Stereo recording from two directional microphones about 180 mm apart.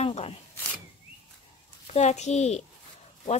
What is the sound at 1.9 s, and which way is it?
Speech, 40° left (ahead or behind).